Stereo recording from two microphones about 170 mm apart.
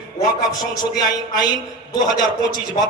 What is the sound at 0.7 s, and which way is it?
A man's voice, 25° left (ahead or behind).